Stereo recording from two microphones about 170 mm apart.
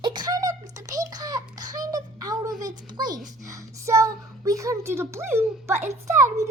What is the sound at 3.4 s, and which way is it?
Speech, 20° right (ahead or behind).